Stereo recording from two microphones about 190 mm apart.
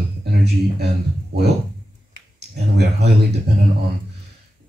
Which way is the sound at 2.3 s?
60° right (ahead or behind).